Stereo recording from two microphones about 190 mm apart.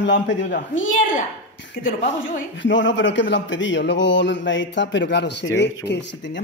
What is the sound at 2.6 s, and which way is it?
Speech, 75° left (ahead or behind).